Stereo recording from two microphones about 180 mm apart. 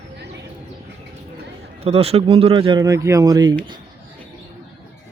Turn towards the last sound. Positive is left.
turn(degrees=-20)  # may be behind; listen again after turning